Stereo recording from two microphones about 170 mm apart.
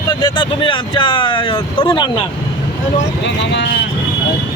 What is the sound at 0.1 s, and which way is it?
Speech, 30° left (ahead or behind).